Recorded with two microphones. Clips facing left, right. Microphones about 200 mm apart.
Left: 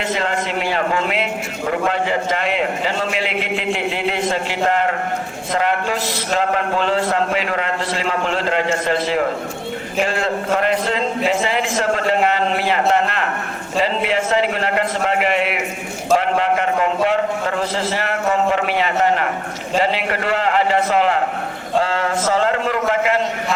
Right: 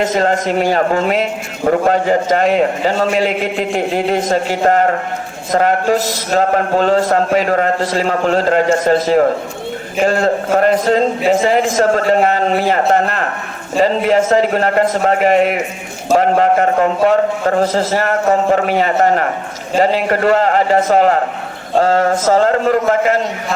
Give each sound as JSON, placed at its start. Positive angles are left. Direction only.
{"t": 0.0, "sound": "a man's voice", "side_deg": -40}